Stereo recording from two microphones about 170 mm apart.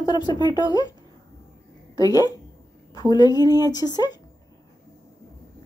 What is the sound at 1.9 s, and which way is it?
Speech, 20° left (ahead or behind).